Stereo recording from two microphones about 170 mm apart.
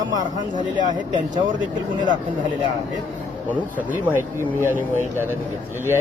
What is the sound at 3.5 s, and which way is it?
Speech, 10° right (ahead or behind).